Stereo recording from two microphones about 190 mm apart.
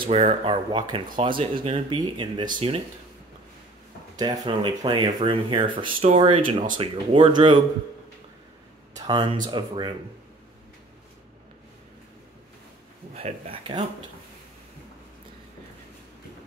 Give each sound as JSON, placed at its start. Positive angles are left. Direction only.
{"t": 0.0, "sound": "speech", "side_deg": -35}
{"t": 4.2, "sound": "speech", "side_deg": -20}
{"t": 8.9, "sound": "speech", "side_deg": -25}
{"t": 13.1, "sound": "speech", "side_deg": -30}